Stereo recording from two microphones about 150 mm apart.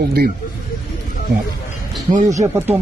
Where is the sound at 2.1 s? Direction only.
55° right (ahead or behind).